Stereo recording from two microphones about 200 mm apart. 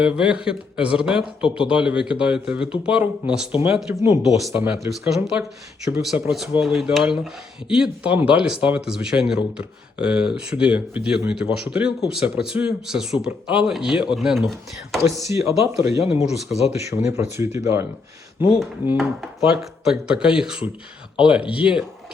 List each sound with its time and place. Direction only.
0.0 s speech: 5° right (ahead or behind)
15.3 s speech: 15° right (ahead or behind)
16.5 s speech: 35° left (ahead or behind)
17.1 s speech: 15° right (ahead or behind)